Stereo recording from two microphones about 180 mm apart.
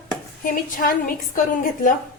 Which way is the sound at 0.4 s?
50° left (ahead or behind).